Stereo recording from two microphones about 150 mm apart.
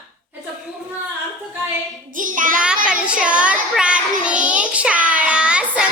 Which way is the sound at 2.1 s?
60° right (ahead or behind).